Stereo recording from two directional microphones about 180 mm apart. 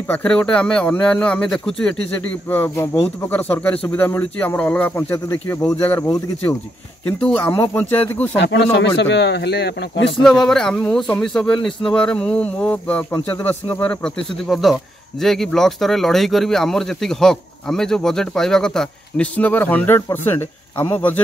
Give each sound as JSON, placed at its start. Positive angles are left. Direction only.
{"t": 0.1, "sound": "speech", "side_deg": 10}
{"t": 8.4, "sound": "speech", "side_deg": 90}
{"t": 8.7, "sound": "speech", "side_deg": 75}
{"t": 10.2, "sound": "speech", "side_deg": 5}